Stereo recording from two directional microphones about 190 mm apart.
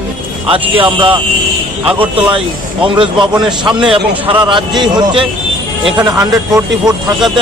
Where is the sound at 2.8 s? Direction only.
25° right (ahead or behind).